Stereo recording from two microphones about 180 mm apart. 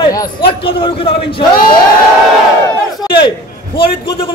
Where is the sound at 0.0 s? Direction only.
25° left (ahead or behind).